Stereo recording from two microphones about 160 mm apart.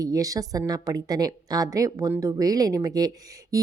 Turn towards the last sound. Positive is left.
turn(degrees=-25)  # may be behind; listen again after turning